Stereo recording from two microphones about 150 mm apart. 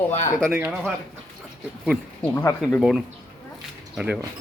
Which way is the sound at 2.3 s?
20° left (ahead or behind).